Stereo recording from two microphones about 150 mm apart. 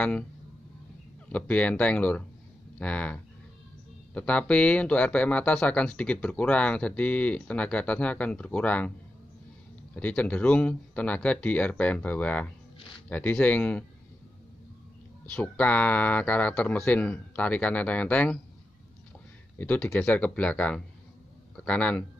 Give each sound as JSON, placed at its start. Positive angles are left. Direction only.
{"t": 1.3, "sound": "speech", "side_deg": 10}
{"t": 9.9, "sound": "speech", "side_deg": 10}
{"t": 15.3, "sound": "speech", "side_deg": 10}
{"t": 19.6, "sound": "speech", "side_deg": 10}